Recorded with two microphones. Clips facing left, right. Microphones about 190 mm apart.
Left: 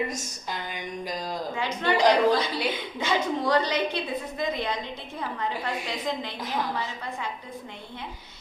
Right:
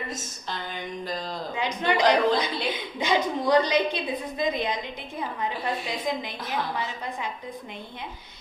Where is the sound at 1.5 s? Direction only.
15° right (ahead or behind).